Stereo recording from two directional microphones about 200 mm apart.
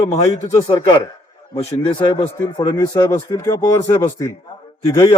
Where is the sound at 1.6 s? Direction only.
25° left (ahead or behind).